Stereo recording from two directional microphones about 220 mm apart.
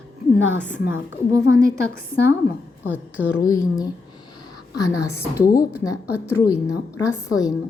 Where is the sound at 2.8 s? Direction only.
5° right (ahead or behind).